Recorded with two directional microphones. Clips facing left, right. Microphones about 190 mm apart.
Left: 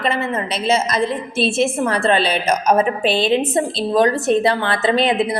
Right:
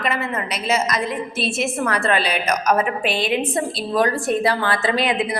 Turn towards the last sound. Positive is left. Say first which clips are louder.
# left 4 dB
turn(degrees=25)  # may be behind; listen again after turning